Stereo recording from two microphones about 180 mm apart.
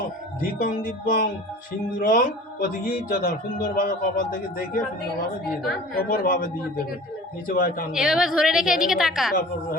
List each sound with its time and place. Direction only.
0.6 s a man's voice: 50° left (ahead or behind)
6.1 s a man's voice: 50° left (ahead or behind)
7.9 s a woman's voice: 5° right (ahead or behind)